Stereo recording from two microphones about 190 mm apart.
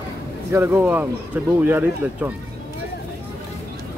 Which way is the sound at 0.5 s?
15° right (ahead or behind).